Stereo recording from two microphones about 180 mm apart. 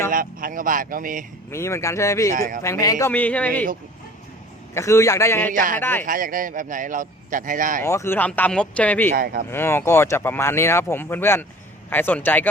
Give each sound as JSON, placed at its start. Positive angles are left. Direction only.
{"t": 0.1, "sound": "a man's voice", "side_deg": -50}
{"t": 1.5, "sound": "speech", "side_deg": 15}
{"t": 2.3, "sound": "a man's voice", "side_deg": -50}
{"t": 2.6, "sound": "speech", "side_deg": 20}
{"t": 4.7, "sound": "speech", "side_deg": 15}
{"t": 5.5, "sound": "a man's voice", "side_deg": -50}
{"t": 5.8, "sound": "speech", "side_deg": 10}
{"t": 6.1, "sound": "a man's voice", "side_deg": -50}
{"t": 7.8, "sound": "speech", "side_deg": 15}
{"t": 9.0, "sound": "speech", "side_deg": -55}
{"t": 9.5, "sound": "speech", "side_deg": 15}